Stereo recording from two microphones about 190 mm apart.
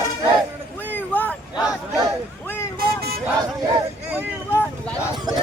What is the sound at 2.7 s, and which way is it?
Vehicle, 55° right (ahead or behind).